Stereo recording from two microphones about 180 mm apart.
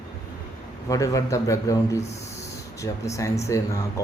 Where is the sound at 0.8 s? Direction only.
20° left (ahead or behind).